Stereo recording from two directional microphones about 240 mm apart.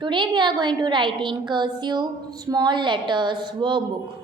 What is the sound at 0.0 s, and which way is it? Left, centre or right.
A woman's voice, centre.